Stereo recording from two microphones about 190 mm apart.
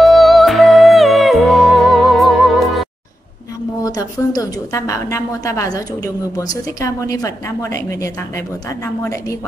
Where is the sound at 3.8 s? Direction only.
20° left (ahead or behind).